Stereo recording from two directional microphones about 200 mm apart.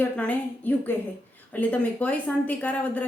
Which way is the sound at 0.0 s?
10° left (ahead or behind).